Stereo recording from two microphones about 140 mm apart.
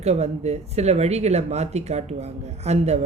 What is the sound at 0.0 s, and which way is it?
Speech, 50° right (ahead or behind).